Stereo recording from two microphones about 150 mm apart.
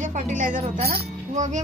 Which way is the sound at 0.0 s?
55° right (ahead or behind).